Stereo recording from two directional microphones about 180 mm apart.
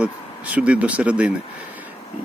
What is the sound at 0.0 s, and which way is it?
Speech, 5° right (ahead or behind).